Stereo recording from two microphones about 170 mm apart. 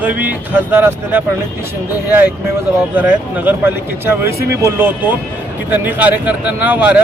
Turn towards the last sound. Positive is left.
turn(degrees=-10)  # may be behind; listen again after turning